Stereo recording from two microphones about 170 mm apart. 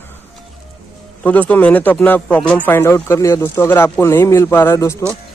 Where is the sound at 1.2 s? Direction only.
10° left (ahead or behind).